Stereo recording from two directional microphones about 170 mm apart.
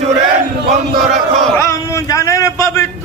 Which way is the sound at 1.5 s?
15° left (ahead or behind).